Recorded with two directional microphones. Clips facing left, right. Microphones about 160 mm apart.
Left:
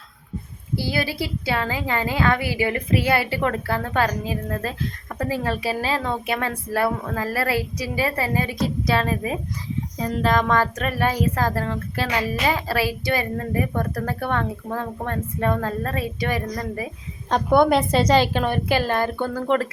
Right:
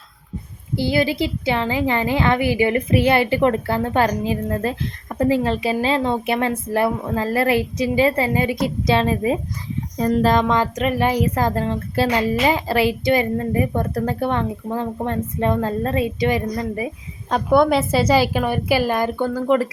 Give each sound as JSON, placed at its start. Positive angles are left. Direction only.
{"t": 0.8, "sound": "speech", "side_deg": -20}
{"t": 10.0, "sound": "speech", "side_deg": -40}
{"t": 10.4, "sound": "a woman's voice", "side_deg": -20}
{"t": 17.2, "sound": "a woman's voice", "side_deg": -5}